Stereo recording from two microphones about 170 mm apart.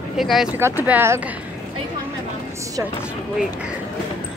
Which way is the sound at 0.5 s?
10° right (ahead or behind).